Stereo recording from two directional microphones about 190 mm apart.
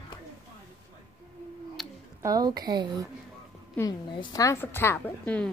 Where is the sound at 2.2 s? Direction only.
20° right (ahead or behind).